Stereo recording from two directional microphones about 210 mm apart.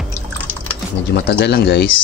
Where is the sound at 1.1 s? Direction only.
50° left (ahead or behind).